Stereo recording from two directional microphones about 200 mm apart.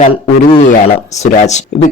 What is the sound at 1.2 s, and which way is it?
Speech, 35° left (ahead or behind).